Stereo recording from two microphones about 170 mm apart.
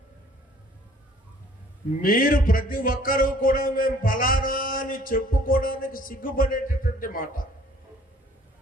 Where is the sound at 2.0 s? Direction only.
55° left (ahead or behind).